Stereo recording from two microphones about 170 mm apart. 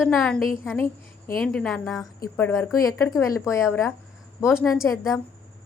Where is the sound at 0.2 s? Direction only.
5° left (ahead or behind).